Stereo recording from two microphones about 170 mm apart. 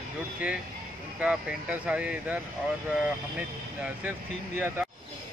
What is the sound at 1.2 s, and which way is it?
Speech, 5° right (ahead or behind).